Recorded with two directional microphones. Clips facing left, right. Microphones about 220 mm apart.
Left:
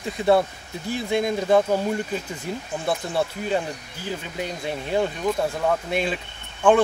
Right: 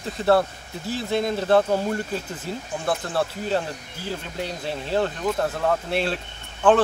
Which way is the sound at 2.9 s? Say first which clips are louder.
Even; centre (ahead or behind).